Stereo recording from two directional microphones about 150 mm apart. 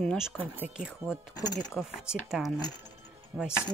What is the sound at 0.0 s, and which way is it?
Speech, 5° left (ahead or behind).